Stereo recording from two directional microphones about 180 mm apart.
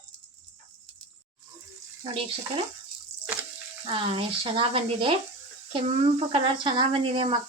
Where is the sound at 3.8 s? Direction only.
30° right (ahead or behind).